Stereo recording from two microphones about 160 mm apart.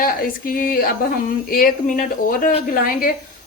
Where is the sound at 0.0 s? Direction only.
60° left (ahead or behind).